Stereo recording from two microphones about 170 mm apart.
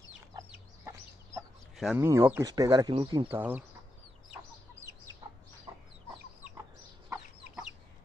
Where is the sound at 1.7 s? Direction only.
Centre (ahead or behind).